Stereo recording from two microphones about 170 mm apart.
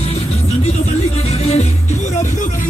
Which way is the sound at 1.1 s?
40° left (ahead or behind).